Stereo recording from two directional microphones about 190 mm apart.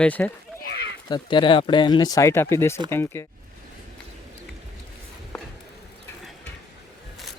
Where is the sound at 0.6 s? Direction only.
60° left (ahead or behind).